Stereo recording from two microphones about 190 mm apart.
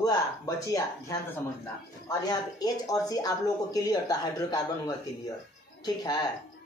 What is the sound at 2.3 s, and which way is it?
Speech, 20° left (ahead or behind).